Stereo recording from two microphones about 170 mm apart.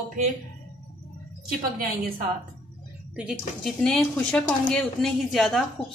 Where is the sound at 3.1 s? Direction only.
5° right (ahead or behind).